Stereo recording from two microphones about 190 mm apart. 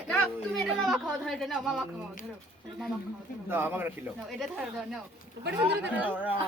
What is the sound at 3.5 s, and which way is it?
Speech, 10° right (ahead or behind).